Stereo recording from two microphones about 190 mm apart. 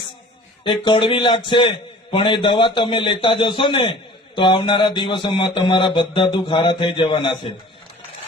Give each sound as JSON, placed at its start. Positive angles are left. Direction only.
{"t": 0.6, "sound": "a man's voice", "side_deg": 25}